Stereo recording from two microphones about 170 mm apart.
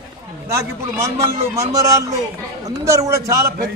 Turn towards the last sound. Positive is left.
turn(degrees=-20)  # may be behind; listen again after turning